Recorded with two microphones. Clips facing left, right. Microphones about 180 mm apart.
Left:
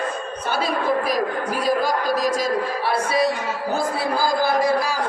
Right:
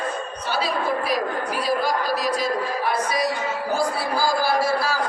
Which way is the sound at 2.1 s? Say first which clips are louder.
Left 2 dB; 45° left (ahead or behind).